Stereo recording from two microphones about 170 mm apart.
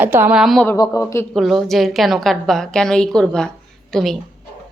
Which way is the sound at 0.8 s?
20° left (ahead or behind).